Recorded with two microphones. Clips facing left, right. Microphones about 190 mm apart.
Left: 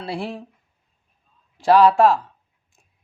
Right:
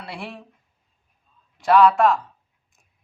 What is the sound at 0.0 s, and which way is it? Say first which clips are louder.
Speech: left 7 dB; 30° left (ahead or behind).